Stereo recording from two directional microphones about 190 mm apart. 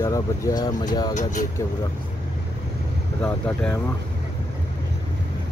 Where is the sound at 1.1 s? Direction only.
40° left (ahead or behind).